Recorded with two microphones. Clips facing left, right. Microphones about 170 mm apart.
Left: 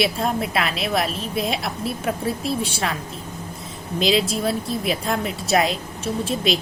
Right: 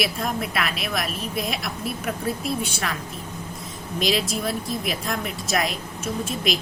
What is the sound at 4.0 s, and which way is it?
A woman's voice, 30° left (ahead or behind).